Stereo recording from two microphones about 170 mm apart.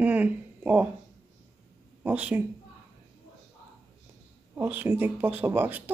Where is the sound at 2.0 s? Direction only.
10° right (ahead or behind).